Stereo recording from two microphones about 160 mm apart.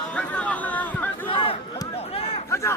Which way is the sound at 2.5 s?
20° left (ahead or behind).